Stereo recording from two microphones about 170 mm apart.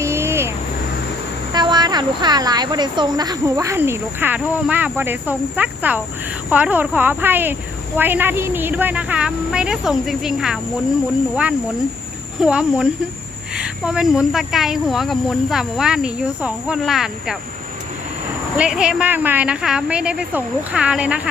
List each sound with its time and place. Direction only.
0.0 s vehicle: 15° right (ahead or behind)
1.5 s speech: 25° right (ahead or behind); by 10.6 s 5° right (ahead or behind)
12.4 s speech: 5° right (ahead or behind)
18.5 s speech: 5° right (ahead or behind)